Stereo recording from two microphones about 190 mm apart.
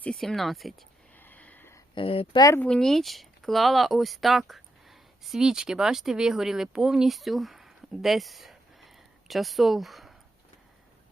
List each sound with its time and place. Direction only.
0.0 s a sound: 5° left (ahead or behind)
2.0 s speech: 30° left (ahead or behind)
2.6 s speech: 5° left (ahead or behind)